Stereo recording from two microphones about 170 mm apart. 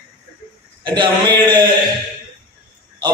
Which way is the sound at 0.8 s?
30° right (ahead or behind).